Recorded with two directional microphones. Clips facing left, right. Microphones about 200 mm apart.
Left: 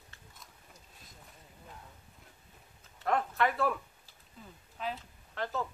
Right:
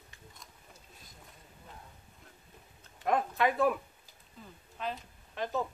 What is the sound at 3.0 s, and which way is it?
Speech, 15° right (ahead or behind).